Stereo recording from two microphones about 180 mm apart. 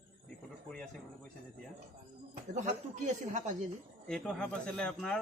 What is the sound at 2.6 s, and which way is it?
Speech, 40° right (ahead or behind).